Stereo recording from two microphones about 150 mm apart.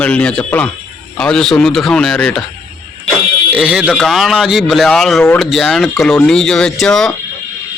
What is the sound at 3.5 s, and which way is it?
Speech, 5° right (ahead or behind).